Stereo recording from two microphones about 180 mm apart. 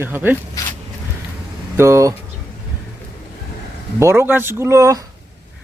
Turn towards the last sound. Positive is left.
turn(degrees=-15)  # may be behind; listen again after turning